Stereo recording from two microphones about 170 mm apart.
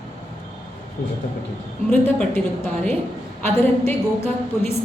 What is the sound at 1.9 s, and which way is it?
A woman's voice, 10° left (ahead or behind).